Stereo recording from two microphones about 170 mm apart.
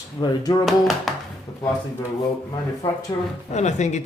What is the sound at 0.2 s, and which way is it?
Speech, 25° left (ahead or behind).